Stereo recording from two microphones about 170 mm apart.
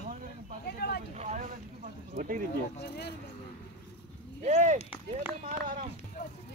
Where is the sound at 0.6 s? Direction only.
70° left (ahead or behind).